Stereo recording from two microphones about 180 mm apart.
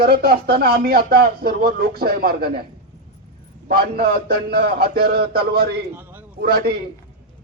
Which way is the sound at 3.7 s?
60° right (ahead or behind).